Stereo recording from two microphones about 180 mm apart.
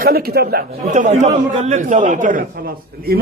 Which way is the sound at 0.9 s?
40° right (ahead or behind).